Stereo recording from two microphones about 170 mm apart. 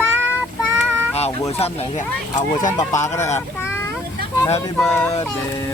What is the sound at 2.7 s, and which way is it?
Speech, 15° left (ahead or behind).